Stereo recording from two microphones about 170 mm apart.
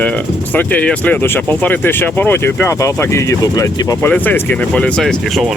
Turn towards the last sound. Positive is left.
turn(degrees=0)  # may be behind; listen again after turning